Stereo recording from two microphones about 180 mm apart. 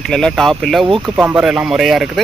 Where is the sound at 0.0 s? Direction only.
5° left (ahead or behind).